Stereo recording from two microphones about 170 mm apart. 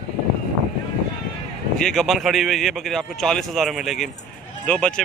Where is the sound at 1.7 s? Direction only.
Centre (ahead or behind).